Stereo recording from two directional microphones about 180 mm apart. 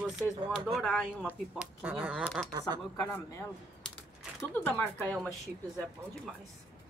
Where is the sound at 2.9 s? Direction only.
10° left (ahead or behind).